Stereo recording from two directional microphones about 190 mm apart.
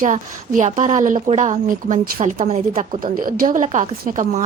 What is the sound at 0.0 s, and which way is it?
A woman's voice, 40° right (ahead or behind).